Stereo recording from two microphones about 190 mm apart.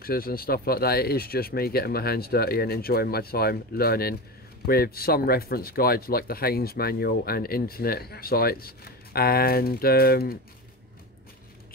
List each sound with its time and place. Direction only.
0.0 s speech: 50° left (ahead or behind)